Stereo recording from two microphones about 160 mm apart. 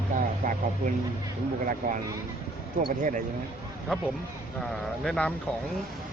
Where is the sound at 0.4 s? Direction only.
55° right (ahead or behind).